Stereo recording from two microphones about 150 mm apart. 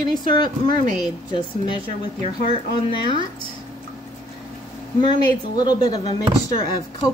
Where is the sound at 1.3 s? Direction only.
30° left (ahead or behind).